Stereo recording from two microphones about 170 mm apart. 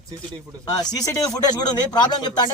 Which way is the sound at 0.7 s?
25° left (ahead or behind).